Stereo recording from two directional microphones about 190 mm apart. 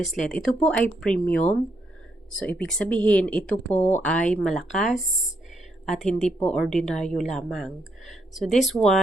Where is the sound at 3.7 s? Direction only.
40° left (ahead or behind).